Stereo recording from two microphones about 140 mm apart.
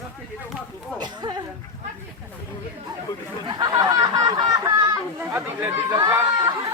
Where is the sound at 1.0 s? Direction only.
30° right (ahead or behind).